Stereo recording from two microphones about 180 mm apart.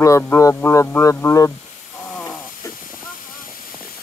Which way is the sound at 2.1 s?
10° left (ahead or behind).